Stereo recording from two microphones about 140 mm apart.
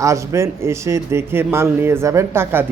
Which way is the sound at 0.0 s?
20° right (ahead or behind).